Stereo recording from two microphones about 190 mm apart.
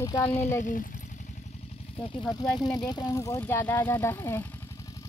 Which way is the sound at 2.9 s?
20° left (ahead or behind).